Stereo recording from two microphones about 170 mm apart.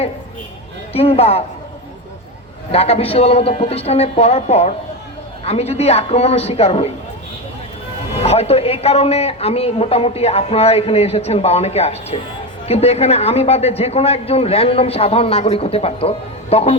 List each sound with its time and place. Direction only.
0.9 s a man's voice: 35° left (ahead or behind)
2.7 s a man's voice: 35° left (ahead or behind)
8.2 s a man's voice: 35° left (ahead or behind)